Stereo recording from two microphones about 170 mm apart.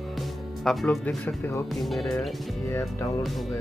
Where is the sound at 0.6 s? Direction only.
10° left (ahead or behind).